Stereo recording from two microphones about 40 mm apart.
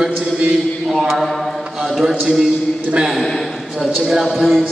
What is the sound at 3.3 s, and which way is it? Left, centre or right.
Speech, centre.